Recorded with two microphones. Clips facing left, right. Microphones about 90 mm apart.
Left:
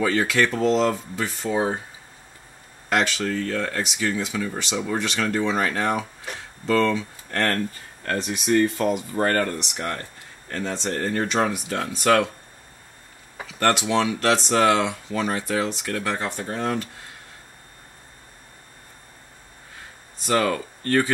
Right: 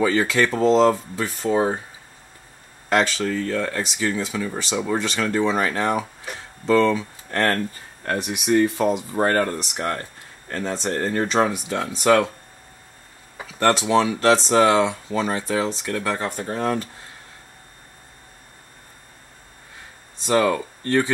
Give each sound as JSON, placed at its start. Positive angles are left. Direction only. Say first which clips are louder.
{"t": 0.0, "sound": "speech", "louder": "right 2 dB", "side_deg": -35}
{"t": 2.9, "sound": "speech", "louder": "right 2 dB", "side_deg": -35}
{"t": 8.0, "sound": "speech", "louder": "right 1 dB", "side_deg": -15}
{"t": 9.6, "sound": "speech", "louder": "right 3 dB", "side_deg": -35}
{"t": 11.0, "sound": "speech", "louder": "right 3 dB", "side_deg": -30}
{"t": 13.5, "sound": "speech", "louder": "right 3 dB", "side_deg": -30}
{"t": 20.2, "sound": "speech", "louder": "right 3 dB", "side_deg": -20}